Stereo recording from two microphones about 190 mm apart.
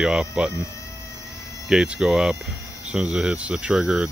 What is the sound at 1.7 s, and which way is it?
Speech, 5° right (ahead or behind).